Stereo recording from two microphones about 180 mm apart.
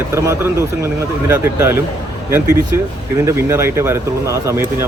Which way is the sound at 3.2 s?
15° right (ahead or behind).